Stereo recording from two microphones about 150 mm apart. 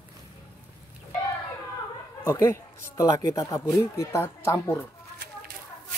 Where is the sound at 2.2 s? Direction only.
20° left (ahead or behind).